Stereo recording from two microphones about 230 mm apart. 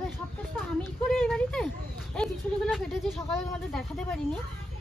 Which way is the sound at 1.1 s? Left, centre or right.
Centre.